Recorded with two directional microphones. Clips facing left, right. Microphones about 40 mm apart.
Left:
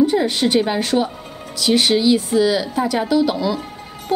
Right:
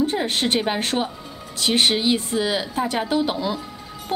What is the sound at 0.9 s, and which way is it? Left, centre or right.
Speech, centre.